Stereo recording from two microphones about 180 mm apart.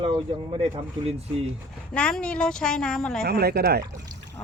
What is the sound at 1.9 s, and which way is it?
A woman's voice, 5° left (ahead or behind).